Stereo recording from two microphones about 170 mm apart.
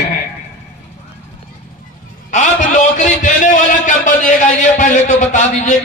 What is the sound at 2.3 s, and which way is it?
A man's voice, 45° left (ahead or behind).